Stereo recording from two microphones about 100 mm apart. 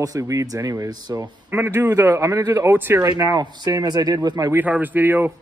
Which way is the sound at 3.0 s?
35° right (ahead or behind).